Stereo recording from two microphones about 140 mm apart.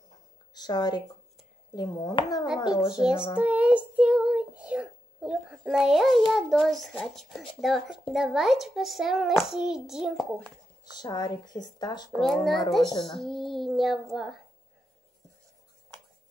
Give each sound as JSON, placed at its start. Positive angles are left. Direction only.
{"t": 0.6, "sound": "speech", "side_deg": 30}
{"t": 3.3, "sound": "child singing", "side_deg": -10}
{"t": 7.2, "sound": "a child's voice", "side_deg": 0}
{"t": 10.8, "sound": "speech", "side_deg": 30}
{"t": 12.2, "sound": "a child's voice", "side_deg": 0}
{"t": 13.2, "sound": "child singing", "side_deg": 0}